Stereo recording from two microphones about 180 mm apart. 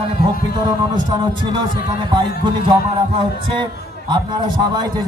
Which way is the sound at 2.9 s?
25° right (ahead or behind).